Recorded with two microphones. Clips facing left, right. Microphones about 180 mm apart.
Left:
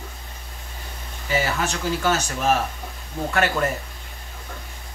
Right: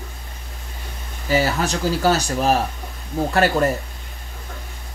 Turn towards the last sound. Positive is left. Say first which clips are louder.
# right 5 dB
turn(degrees=-35)  # may be behind; listen again after turning